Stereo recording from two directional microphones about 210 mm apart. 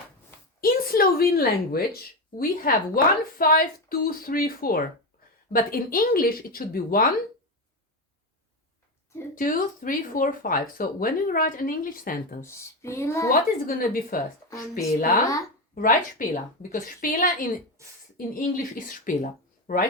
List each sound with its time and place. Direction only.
0.6 s speech: 45° left (ahead or behind)
9.3 s speech: 40° left (ahead or behind)
12.4 s speech: 15° left (ahead or behind)
13.7 s speech: 40° left (ahead or behind)
14.5 s speech: 15° left (ahead or behind)
15.7 s speech: 40° left (ahead or behind)